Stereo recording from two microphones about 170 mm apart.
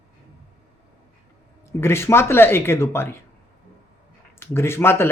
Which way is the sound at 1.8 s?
15° left (ahead or behind).